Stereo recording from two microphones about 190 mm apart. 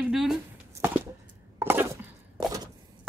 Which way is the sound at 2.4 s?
20° right (ahead or behind).